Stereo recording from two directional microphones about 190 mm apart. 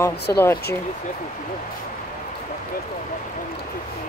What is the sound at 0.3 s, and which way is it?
Speech, 15° left (ahead or behind).